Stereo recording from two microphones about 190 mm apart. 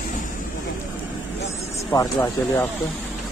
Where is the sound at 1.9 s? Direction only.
20° left (ahead or behind).